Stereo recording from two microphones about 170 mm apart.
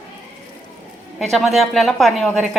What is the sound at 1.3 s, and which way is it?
A woman's voice, centre (ahead or behind).